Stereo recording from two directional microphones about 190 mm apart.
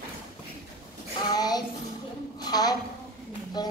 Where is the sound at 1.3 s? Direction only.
20° left (ahead or behind).